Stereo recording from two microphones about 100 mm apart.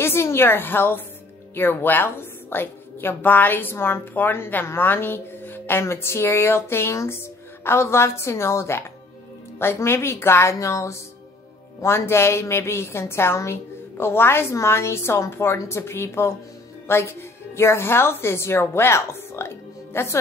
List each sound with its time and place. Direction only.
0.0 s a woman's voice: 25° left (ahead or behind)